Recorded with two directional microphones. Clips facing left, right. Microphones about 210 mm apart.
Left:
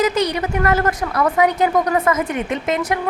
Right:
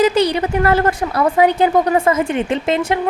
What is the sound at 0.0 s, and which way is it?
A woman's voice, 30° right (ahead or behind).